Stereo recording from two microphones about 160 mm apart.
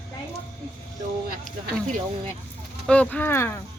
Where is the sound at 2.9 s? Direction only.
10° left (ahead or behind).